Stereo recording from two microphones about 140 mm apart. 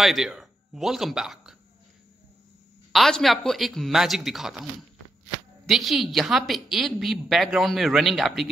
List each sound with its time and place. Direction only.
0.0 s speech: centre (ahead or behind)
2.9 s a woman's voice: centre (ahead or behind)
5.7 s a woman's voice: centre (ahead or behind)